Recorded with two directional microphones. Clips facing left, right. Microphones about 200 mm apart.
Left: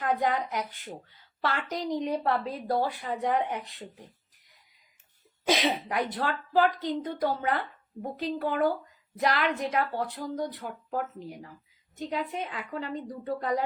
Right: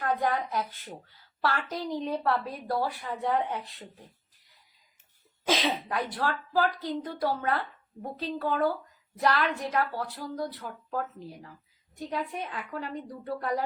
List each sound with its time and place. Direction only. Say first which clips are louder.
0.0 s a woman's voice: left 1 dB; 20° left (ahead or behind)